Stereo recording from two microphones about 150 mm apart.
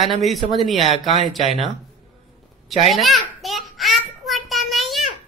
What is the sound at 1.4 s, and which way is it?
Speech, 40° left (ahead or behind).